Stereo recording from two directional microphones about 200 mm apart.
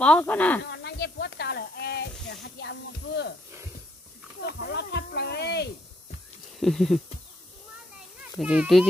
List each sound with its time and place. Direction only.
0.0 s speech: 5° left (ahead or behind)
0.7 s a sound: 55° left (ahead or behind)
2.4 s speech: 60° left (ahead or behind)
4.4 s speech: 55° left (ahead or behind)
6.6 s a sound: centre (ahead or behind)
8.2 s a child's voice: 5° right (ahead or behind)